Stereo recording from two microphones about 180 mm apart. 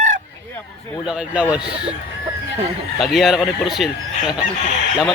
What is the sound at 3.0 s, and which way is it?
Speech, centre (ahead or behind).